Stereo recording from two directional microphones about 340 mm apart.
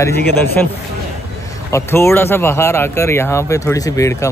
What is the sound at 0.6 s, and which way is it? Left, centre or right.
Speech, centre.